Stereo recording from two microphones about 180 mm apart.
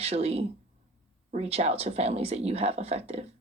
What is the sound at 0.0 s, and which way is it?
Speech, 35° right (ahead or behind).